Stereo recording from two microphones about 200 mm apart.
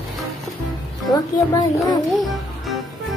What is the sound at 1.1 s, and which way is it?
Speech, 20° left (ahead or behind).